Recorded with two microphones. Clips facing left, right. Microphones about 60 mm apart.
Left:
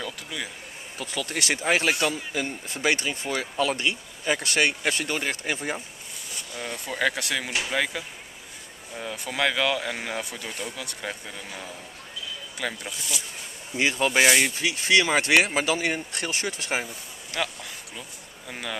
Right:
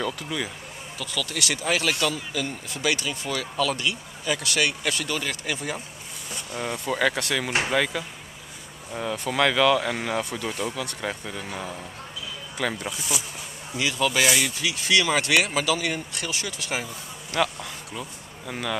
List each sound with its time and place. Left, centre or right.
0.0 s speech: centre
0.9 s speech: left
6.9 s speech: centre
9.0 s speech: centre
12.5 s speech: centre
13.7 s speech: left
17.3 s speech: centre